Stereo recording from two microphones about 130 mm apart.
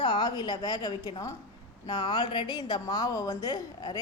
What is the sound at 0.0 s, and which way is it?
A woman's voice, 30° left (ahead or behind).